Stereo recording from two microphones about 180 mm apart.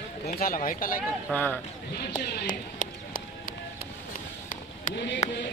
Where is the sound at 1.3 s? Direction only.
10° left (ahead or behind).